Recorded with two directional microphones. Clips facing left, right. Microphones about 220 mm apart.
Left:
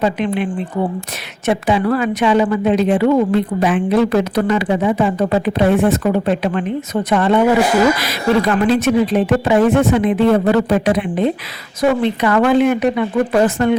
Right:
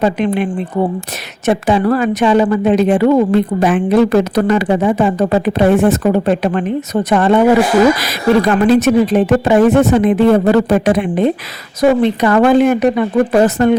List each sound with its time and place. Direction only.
0.0 s a woman's voice: 45° right (ahead or behind)
1.5 s a woman's voice: 45° right (ahead or behind)
8.6 s a woman's voice: 45° right (ahead or behind)